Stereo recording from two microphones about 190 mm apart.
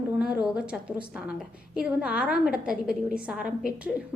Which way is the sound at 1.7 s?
5° right (ahead or behind).